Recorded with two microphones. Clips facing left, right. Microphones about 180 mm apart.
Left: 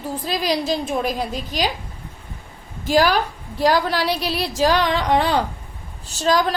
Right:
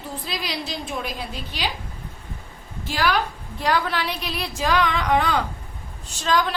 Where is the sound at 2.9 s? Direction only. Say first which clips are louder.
Left 6 dB; 40° left (ahead or behind).